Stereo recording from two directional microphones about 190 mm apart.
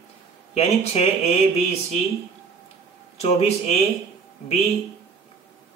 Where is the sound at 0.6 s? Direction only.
35° left (ahead or behind).